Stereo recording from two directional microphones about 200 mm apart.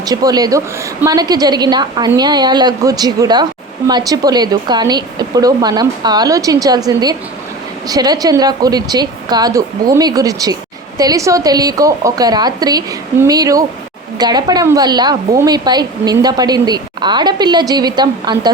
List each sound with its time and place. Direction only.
0.0 s a woman's voice: 20° right (ahead or behind)